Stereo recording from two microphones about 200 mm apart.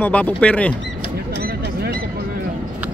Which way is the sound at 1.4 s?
50° right (ahead or behind).